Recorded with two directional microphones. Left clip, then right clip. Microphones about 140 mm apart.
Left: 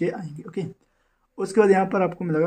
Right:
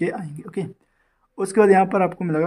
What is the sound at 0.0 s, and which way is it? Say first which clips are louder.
Speech: right 2 dB; 20° right (ahead or behind).